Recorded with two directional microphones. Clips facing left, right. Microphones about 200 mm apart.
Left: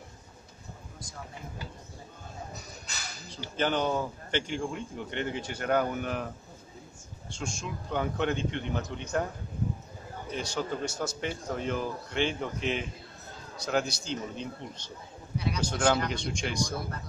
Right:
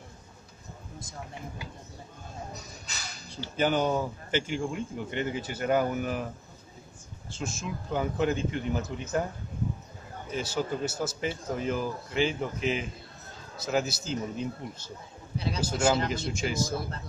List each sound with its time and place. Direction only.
3.5 s speech: 10° right (ahead or behind)
7.2 s a man's voice: 5° right (ahead or behind)
10.3 s a man's voice: 5° right (ahead or behind)
15.3 s a sound: 30° right (ahead or behind)
15.6 s a man's voice: 5° right (ahead or behind)